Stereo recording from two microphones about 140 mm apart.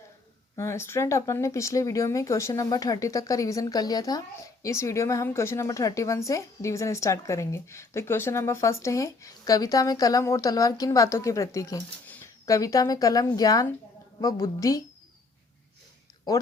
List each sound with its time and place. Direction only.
0.5 s a woman's voice: 20° left (ahead or behind)
12.0 s a sound: 10° left (ahead or behind)
12.5 s a woman's voice: 25° left (ahead or behind)